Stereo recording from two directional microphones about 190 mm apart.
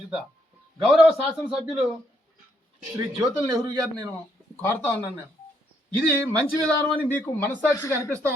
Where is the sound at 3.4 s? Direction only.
20° right (ahead or behind).